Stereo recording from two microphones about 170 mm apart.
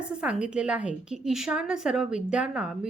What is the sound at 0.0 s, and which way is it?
A woman's voice, 5° right (ahead or behind).